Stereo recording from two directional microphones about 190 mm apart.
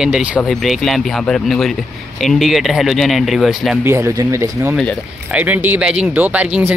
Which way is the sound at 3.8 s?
15° right (ahead or behind).